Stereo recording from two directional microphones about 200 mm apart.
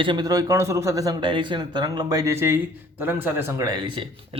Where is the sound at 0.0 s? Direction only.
20° right (ahead or behind).